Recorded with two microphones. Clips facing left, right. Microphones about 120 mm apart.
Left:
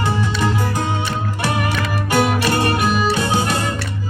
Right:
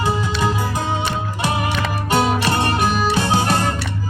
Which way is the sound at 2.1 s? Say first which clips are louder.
Left 1 dB; 25° right (ahead or behind).